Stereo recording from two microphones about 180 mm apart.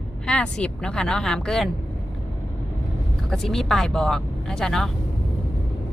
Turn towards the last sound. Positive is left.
turn(degrees=5)  # may be behind; listen again after turning